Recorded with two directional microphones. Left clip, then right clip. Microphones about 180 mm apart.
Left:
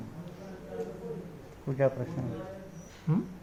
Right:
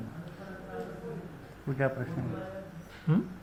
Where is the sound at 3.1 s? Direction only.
Centre (ahead or behind).